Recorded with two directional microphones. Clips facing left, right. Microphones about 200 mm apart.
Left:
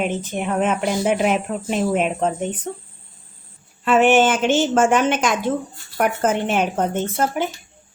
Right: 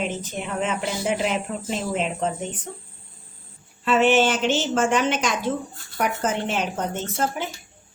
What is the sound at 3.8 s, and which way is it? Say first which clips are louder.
Speech: left 3 dB; 50° left (ahead or behind).